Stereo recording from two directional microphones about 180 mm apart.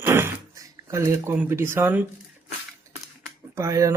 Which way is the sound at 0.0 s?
15° right (ahead or behind).